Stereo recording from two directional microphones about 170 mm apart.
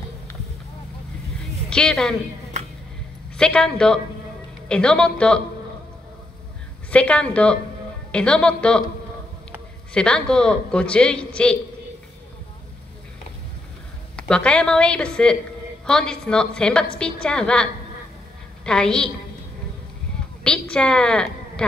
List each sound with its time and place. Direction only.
1.7 s a woman's voice: 5° left (ahead or behind)
3.3 s a man's voice: 5° left (ahead or behind)
6.9 s a man's voice: 5° left (ahead or behind)
9.9 s a man's voice: 5° left (ahead or behind)
14.1 s a man's voice: 5° left (ahead or behind)
20.4 s a woman's voice: 5° left (ahead or behind)